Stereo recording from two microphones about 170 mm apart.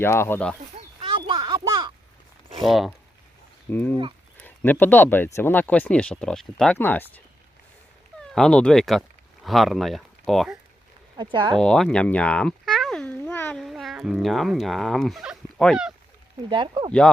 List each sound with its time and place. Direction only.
0.0 s speech: 15° left (ahead or behind)
1.0 s a sound: 25° right (ahead or behind)
2.6 s speech: centre (ahead or behind)
3.7 s speech: 10° left (ahead or behind)
8.2 s speech: 5° left (ahead or behind)
11.2 s speech: 25° right (ahead or behind)
11.5 s a sound: 5° left (ahead or behind)
13.6 s speech: centre (ahead or behind)
16.5 s speech: 25° right (ahead or behind)